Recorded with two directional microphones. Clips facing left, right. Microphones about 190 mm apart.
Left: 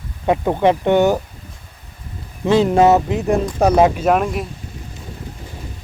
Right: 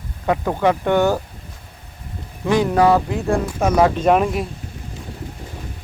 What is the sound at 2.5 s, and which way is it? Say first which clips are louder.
Speech: left 3 dB; 25° left (ahead or behind).